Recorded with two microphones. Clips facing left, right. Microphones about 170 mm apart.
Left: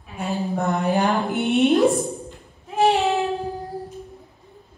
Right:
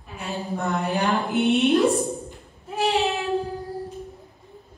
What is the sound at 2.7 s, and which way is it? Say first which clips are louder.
Child singing: left 4 dB; 60° left (ahead or behind).